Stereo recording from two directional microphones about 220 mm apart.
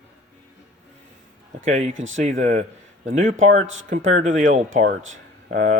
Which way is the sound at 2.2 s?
35° right (ahead or behind).